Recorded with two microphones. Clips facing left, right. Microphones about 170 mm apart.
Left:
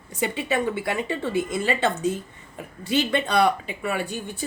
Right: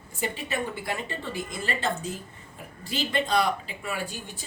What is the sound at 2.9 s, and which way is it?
A woman's voice, 65° left (ahead or behind).